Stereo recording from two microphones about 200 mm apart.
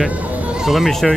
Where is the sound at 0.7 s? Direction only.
Centre (ahead or behind).